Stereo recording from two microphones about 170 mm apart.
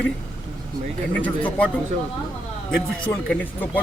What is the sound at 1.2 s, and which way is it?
Speech, 10° left (ahead or behind).